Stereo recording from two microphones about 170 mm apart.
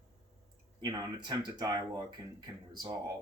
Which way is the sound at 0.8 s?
25° right (ahead or behind).